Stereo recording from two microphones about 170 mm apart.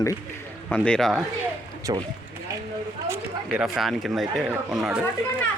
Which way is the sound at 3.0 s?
15° right (ahead or behind).